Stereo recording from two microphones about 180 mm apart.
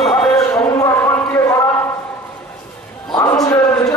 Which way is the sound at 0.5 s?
15° left (ahead or behind).